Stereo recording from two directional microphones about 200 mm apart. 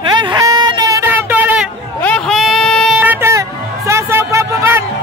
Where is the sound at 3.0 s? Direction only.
10° right (ahead or behind).